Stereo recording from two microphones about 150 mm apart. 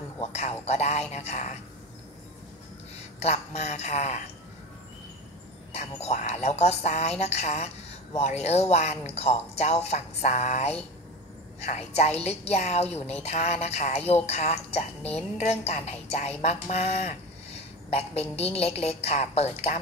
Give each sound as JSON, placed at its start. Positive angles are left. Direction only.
{"t": 0.2, "sound": "a woman's voice", "side_deg": 45}
{"t": 3.2, "sound": "a woman's voice", "side_deg": 45}
{"t": 5.7, "sound": "a woman's voice", "side_deg": 45}